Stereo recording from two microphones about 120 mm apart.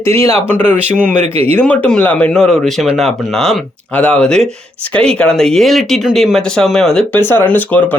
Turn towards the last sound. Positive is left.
turn(degrees=15)  # may be behind; listen again after turning